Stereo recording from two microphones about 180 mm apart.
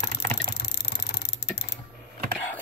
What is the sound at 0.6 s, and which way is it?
Computer keyboard, 65° left (ahead or behind).